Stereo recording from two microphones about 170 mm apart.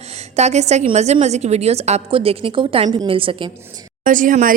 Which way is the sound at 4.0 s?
50° right (ahead or behind).